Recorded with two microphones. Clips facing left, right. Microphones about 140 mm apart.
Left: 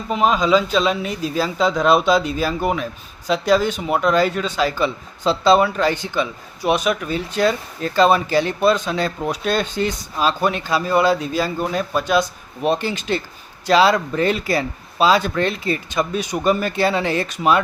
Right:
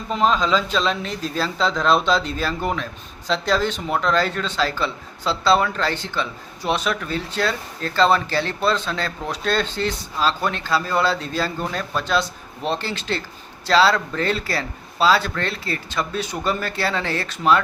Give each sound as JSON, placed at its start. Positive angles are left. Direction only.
{"t": 0.1, "sound": "speech", "side_deg": 10}